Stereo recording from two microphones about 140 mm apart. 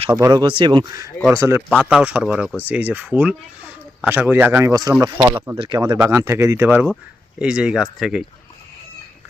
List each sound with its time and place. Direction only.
0.2 s speech: 25° right (ahead or behind)
1.3 s speech: 20° right (ahead or behind)
5.5 s speech: 30° right (ahead or behind)
6.0 s speech: 20° right (ahead or behind); by 8.2 s 5° right (ahead or behind)